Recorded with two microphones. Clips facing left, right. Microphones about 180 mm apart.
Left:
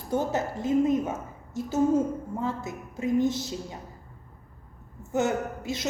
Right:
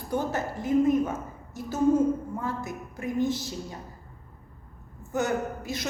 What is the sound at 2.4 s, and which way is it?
A woman's voice, 20° left (ahead or behind).